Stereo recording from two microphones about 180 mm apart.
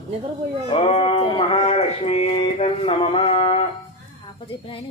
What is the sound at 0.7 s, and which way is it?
Speech, 30° left (ahead or behind).